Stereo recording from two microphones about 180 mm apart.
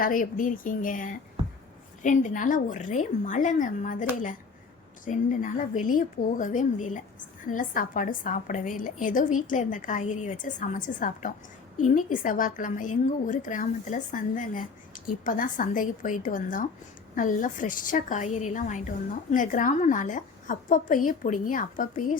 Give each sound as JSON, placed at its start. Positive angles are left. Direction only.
{"t": 0.0, "sound": "a woman's voice", "side_deg": 50}
{"t": 5.0, "sound": "a woman's voice", "side_deg": 45}